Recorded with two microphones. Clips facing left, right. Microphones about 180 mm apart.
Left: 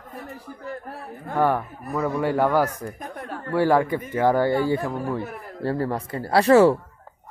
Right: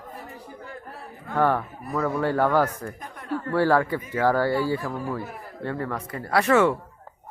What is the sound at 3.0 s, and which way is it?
Chuckle, 50° left (ahead or behind).